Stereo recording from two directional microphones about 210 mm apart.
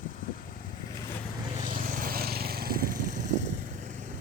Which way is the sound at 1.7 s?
40° right (ahead or behind).